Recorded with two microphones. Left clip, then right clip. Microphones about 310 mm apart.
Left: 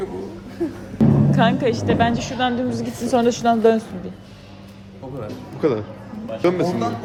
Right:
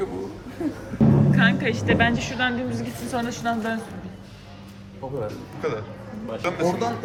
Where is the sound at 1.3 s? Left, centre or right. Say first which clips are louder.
Left 3 dB; centre.